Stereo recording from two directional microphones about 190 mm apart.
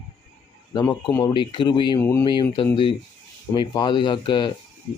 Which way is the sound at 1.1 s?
20° left (ahead or behind).